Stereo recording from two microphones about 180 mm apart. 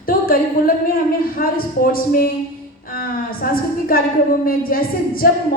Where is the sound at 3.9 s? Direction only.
55° left (ahead or behind).